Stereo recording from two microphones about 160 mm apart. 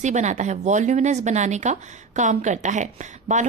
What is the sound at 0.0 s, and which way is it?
Speech, 50° right (ahead or behind).